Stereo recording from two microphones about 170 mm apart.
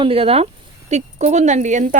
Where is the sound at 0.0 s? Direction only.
35° right (ahead or behind).